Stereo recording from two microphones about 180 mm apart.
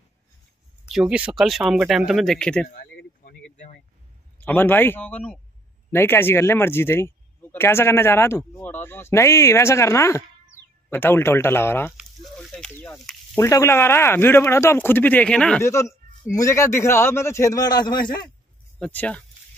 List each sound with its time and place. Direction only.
0.8 s speech: 5° right (ahead or behind)
2.7 s a sound: 60° left (ahead or behind)
4.4 s speech: 10° left (ahead or behind)
12.0 s speech: centre (ahead or behind)
13.0 s a sound: centre (ahead or behind)
13.4 s speech: 15° left (ahead or behind)
15.6 s speech: 15° left (ahead or behind)
18.8 s speech: 10° left (ahead or behind)